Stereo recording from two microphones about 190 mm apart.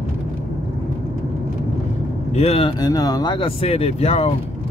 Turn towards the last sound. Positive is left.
turn(degrees=30)  # may be behind; listen again after turning